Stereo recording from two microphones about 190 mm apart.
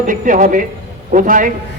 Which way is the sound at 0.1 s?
45° right (ahead or behind).